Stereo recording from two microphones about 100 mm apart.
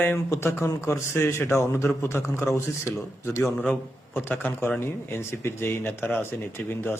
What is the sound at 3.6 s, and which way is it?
A man's voice, 20° left (ahead or behind).